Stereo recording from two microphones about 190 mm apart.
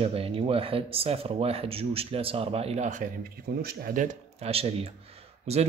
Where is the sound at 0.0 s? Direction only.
30° right (ahead or behind).